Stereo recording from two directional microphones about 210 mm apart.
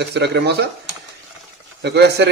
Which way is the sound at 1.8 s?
55° right (ahead or behind).